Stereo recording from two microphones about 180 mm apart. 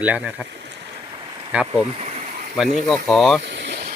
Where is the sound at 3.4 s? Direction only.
70° right (ahead or behind).